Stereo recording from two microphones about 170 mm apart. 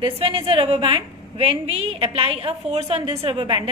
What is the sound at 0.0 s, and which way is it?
A woman's voice, 30° right (ahead or behind).